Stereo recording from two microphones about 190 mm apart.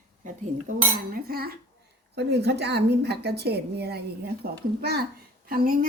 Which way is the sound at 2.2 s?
60° right (ahead or behind).